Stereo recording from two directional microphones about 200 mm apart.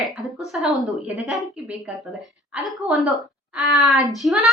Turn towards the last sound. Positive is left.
turn(degrees=0)  # may be behind; listen again after turning